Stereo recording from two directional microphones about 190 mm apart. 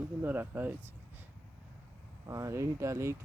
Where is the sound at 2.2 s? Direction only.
15° right (ahead or behind).